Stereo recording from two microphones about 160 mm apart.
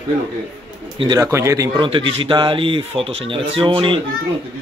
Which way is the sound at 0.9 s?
25° right (ahead or behind).